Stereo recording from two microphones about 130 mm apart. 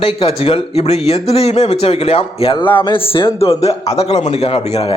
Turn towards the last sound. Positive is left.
turn(degrees=50)  # may be behind; listen again after turning